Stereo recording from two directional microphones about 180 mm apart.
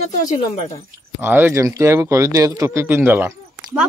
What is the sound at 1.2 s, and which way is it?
Speech, 10° right (ahead or behind).